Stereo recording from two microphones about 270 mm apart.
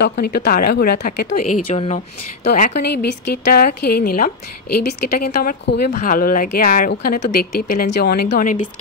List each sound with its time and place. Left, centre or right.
0.1 s speech: left
1.2 s speech: left
2.5 s speech: left
4.6 s a woman's voice: left
5.2 s speech: left